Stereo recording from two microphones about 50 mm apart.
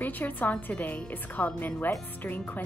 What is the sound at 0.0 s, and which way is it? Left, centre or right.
Speech, left.